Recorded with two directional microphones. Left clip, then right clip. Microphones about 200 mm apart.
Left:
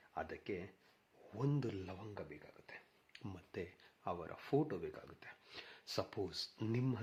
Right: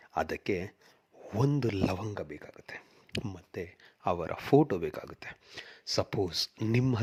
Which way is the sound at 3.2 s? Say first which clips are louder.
Right 8 dB; 30° right (ahead or behind).